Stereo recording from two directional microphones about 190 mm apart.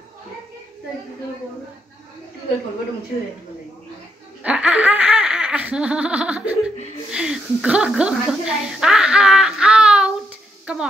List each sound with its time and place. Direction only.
4.4 s laughter: 5° right (ahead or behind)
7.1 s a woman's voice: 5° right (ahead or behind)